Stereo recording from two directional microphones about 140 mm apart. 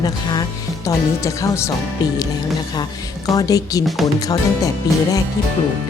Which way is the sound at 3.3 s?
25° left (ahead or behind).